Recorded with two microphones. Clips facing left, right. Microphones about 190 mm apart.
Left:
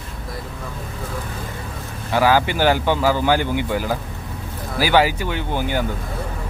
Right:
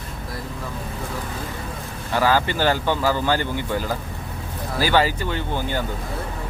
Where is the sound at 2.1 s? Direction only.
10° left (ahead or behind).